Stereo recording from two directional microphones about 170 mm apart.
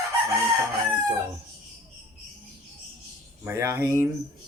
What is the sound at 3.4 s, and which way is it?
Speech, 15° right (ahead or behind).